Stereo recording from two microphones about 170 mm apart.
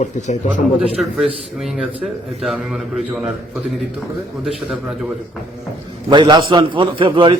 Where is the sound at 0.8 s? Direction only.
Centre (ahead or behind).